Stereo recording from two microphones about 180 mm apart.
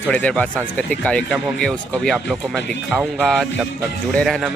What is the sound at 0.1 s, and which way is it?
Speech, 10° left (ahead or behind).